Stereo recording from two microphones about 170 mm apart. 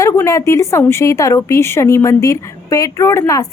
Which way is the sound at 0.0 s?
20° left (ahead or behind).